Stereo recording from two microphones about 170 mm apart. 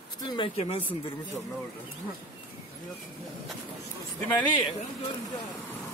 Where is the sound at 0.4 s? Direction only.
35° left (ahead or behind).